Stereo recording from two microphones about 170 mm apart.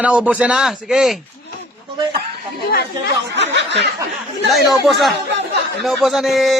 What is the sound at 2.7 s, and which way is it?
Speech, 70° left (ahead or behind).